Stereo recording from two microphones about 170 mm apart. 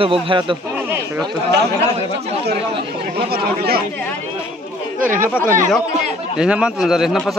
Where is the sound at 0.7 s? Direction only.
10° right (ahead or behind).